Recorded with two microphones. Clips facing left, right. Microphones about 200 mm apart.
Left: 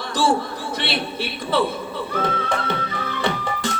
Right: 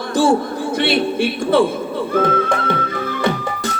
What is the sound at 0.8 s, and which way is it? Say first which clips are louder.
Speech: right 10 dB; 50° right (ahead or behind).